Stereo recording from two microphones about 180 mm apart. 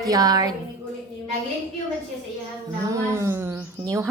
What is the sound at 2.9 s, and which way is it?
Speech, 15° right (ahead or behind).